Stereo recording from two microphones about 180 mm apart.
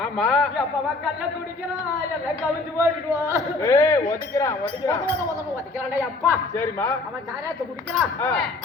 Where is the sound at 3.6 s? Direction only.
20° left (ahead or behind).